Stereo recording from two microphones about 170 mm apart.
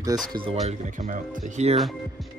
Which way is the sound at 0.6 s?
45° right (ahead or behind).